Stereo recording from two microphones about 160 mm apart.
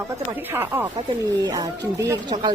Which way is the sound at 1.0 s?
25° right (ahead or behind).